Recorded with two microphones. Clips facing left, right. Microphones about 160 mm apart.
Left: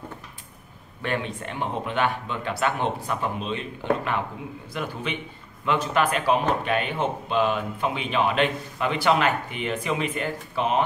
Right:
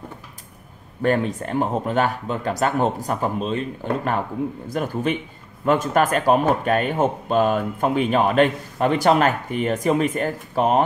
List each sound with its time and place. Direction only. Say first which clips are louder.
1.0 s speech: right 8 dB; 40° right (ahead or behind)
4.7 s speech: right 7 dB; 45° right (ahead or behind)